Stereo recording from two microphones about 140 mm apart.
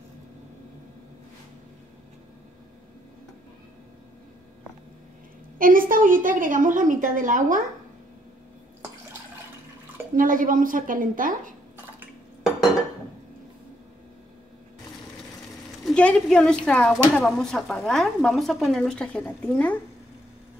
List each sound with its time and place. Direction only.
5.6 s a woman's voice: 80° right
10.1 s a woman's voice: 75° right (ahead or behind)
15.8 s a woman's voice: 5° left (ahead or behind)